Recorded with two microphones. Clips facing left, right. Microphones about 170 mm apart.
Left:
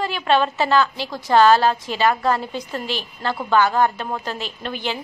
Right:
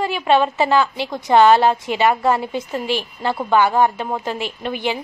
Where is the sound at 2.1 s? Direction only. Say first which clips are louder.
Right 2 dB; 10° right (ahead or behind).